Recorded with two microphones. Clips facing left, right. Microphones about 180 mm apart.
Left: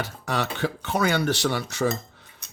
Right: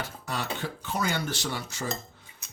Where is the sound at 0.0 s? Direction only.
70° left (ahead or behind).